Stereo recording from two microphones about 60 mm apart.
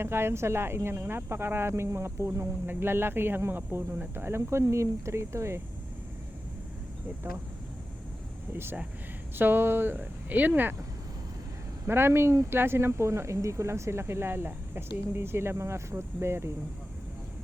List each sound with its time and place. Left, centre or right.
0.0 s speech: right
9.4 s speech: right
11.9 s speech: right
12.5 s speech: right